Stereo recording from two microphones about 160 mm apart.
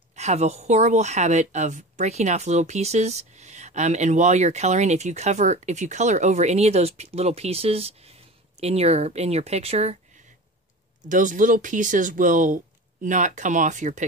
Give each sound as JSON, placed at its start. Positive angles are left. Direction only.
{"t": 0.1, "sound": "speech", "side_deg": -45}
{"t": 11.1, "sound": "speech", "side_deg": -55}